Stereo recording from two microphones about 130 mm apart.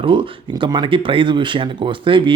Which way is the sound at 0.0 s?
40° right (ahead or behind).